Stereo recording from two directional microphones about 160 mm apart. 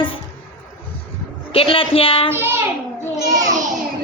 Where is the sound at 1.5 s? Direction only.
35° left (ahead or behind).